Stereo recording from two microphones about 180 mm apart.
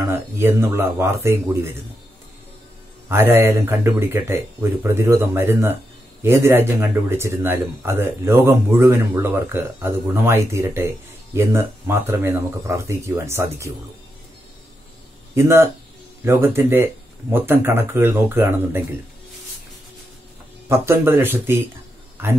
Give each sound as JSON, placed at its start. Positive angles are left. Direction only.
{"t": 0.1, "sound": "speech", "side_deg": -15}
{"t": 3.1, "sound": "speech", "side_deg": -15}
{"t": 15.3, "sound": "speech", "side_deg": -15}
{"t": 20.6, "sound": "speech", "side_deg": -15}